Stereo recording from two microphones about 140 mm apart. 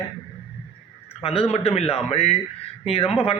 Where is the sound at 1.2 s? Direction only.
45° left (ahead or behind).